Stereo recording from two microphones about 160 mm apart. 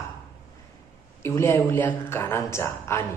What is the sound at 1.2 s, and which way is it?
Speech, 15° left (ahead or behind).